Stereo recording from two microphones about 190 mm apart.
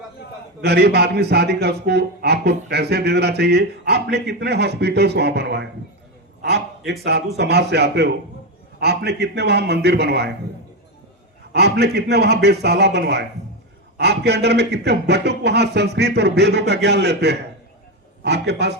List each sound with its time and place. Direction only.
0.6 s a man's voice: 60° right (ahead or behind)
6.4 s a sound: 60° right (ahead or behind)
7.0 s a man's voice: 60° right (ahead or behind)
11.5 s a man's voice: 60° right (ahead or behind)